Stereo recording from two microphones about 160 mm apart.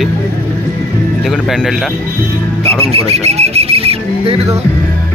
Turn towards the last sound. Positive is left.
turn(degrees=-35)  # may be behind; listen again after turning